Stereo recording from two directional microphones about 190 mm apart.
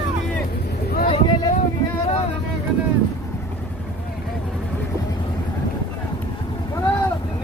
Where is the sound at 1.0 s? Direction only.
30° left (ahead or behind).